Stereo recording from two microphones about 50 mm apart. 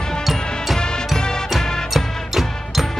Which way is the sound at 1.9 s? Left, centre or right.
Centre.